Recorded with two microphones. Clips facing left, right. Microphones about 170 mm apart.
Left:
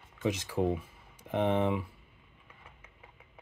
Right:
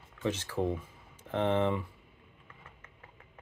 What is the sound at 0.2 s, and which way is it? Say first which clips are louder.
Speech: left 2 dB; 10° left (ahead or behind).